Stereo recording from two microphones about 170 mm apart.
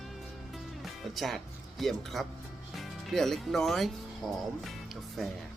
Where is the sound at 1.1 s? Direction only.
Centre (ahead or behind).